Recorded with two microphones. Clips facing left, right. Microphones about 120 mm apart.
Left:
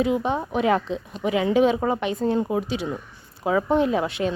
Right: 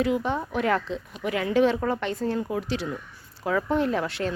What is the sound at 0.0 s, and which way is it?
A woman's voice, 20° left (ahead or behind).